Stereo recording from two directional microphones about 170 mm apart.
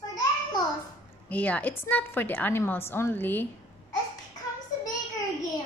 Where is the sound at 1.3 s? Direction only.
10° left (ahead or behind).